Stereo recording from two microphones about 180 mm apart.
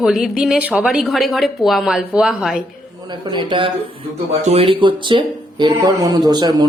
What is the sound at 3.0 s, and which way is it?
Speech, 25° right (ahead or behind).